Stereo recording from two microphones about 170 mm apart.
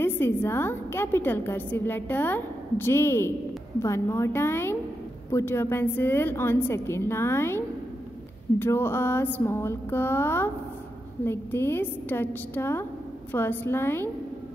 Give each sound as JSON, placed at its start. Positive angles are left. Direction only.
{"t": 0.0, "sound": "a woman's voice", "side_deg": 15}